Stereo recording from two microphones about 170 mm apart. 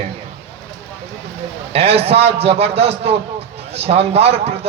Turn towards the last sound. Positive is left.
turn(degrees=-35)  # may be behind; listen again after turning